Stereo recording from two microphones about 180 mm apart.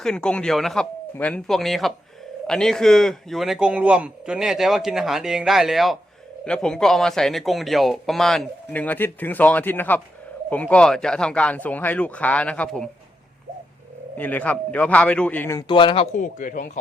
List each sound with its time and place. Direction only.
0.0 s speech: 5° left (ahead or behind)
14.2 s speech: 10° left (ahead or behind)
15.6 s speech: 25° left (ahead or behind)
16.1 s speech: 50° left (ahead or behind)